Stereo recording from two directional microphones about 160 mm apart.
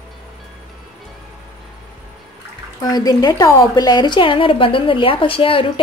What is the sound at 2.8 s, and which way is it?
A woman's voice, 25° left (ahead or behind).